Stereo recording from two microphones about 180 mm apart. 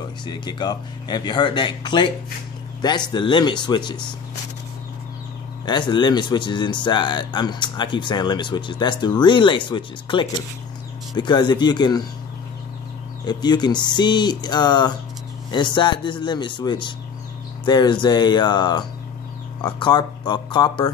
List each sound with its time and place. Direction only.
0.3 s speech: 25° left (ahead or behind)
5.7 s speech: 25° left (ahead or behind)
13.2 s speech: 25° left (ahead or behind)